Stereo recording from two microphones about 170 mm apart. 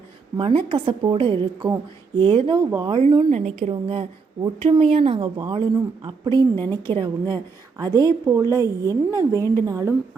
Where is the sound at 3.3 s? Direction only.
40° right (ahead or behind).